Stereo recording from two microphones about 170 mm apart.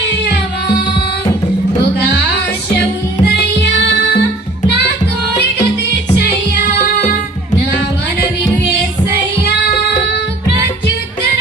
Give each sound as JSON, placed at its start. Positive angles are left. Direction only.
{"t": 3.2, "sound": "music", "side_deg": 80}
{"t": 6.8, "sound": "music", "side_deg": 60}